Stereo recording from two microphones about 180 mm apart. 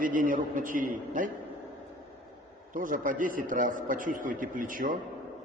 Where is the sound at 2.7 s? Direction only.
50° right (ahead or behind).